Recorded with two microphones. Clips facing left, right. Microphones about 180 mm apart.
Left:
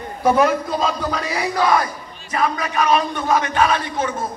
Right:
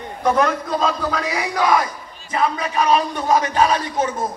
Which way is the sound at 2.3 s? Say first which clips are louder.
Even; 25° right (ahead or behind).